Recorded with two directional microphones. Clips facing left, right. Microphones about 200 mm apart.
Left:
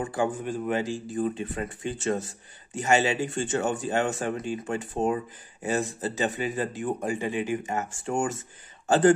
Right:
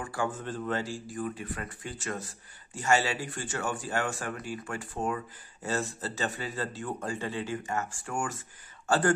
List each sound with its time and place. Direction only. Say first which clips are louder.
0.0 s speech: left 6 dB; 20° left (ahead or behind)